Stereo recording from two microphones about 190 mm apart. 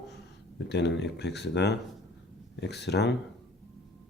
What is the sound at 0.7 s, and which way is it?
Speech, 65° left (ahead or behind).